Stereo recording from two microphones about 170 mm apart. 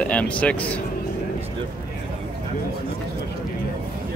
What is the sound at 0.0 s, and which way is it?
Speech, 10° left (ahead or behind).